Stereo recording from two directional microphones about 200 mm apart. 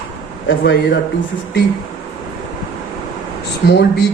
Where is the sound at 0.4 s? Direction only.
60° left (ahead or behind).